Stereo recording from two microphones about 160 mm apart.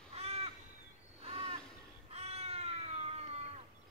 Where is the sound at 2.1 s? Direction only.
40° right (ahead or behind).